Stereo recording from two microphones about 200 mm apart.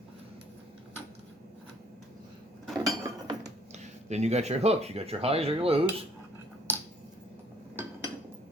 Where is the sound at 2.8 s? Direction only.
20° right (ahead or behind).